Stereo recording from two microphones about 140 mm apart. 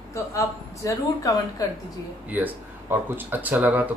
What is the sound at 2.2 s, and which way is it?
Speech, 15° right (ahead or behind).